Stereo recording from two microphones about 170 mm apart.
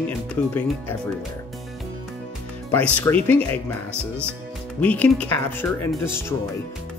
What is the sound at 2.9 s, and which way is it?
Speech, 10° left (ahead or behind).